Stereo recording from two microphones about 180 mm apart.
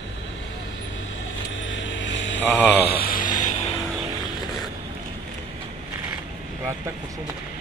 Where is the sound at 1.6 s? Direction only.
90° left.